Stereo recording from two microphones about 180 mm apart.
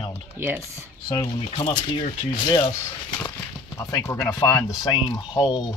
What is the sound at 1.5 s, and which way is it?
Speech, 40° left (ahead or behind).